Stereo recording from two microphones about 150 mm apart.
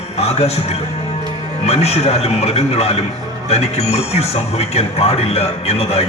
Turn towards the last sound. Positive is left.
turn(degrees=45)  # may be behind; listen again after turning